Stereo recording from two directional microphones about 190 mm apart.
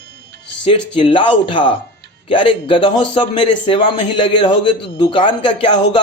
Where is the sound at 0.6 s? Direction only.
30° left (ahead or behind).